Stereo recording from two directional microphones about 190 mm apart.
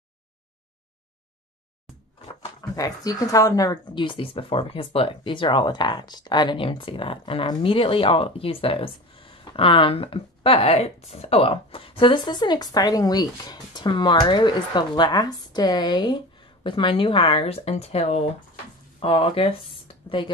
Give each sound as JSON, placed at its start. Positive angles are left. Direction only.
{"t": 2.2, "sound": "speech", "side_deg": 20}